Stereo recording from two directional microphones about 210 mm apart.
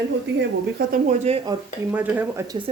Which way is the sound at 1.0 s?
30° right (ahead or behind).